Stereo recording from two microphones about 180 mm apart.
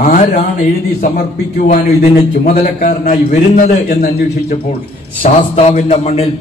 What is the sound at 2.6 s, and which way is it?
A man's voice, 45° left (ahead or behind).